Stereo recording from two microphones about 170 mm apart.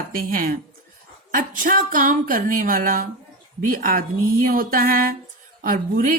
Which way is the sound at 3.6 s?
55° right (ahead or behind).